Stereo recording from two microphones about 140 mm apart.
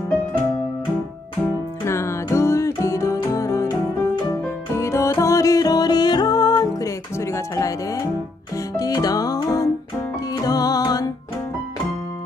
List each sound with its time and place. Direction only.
1.9 s music: 20° left (ahead or behind)